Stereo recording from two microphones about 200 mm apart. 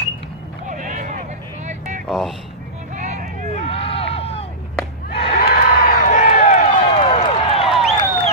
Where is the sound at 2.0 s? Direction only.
5° left (ahead or behind).